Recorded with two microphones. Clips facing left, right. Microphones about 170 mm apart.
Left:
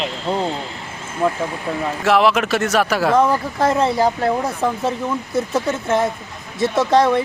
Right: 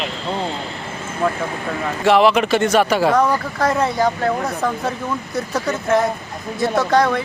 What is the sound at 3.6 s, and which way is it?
Speech, 25° left (ahead or behind).